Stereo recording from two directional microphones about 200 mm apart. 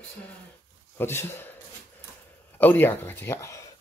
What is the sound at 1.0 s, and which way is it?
Speech, 10° left (ahead or behind).